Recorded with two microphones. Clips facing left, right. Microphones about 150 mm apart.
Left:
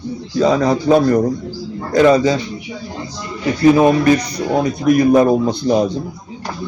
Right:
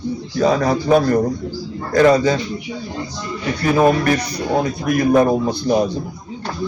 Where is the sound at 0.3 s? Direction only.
20° left (ahead or behind).